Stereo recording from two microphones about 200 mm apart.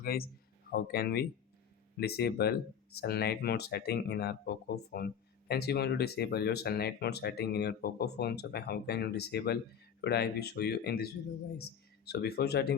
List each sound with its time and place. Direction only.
0.0 s speech: 50° left (ahead or behind)